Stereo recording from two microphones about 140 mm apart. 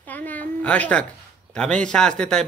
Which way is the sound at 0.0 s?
10° left (ahead or behind).